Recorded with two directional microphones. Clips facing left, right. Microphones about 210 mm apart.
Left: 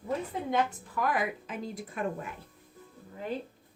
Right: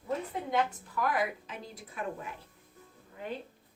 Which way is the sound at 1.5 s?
50° left (ahead or behind).